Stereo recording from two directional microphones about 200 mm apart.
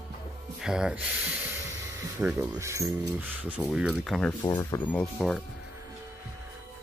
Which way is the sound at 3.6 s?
Centre (ahead or behind).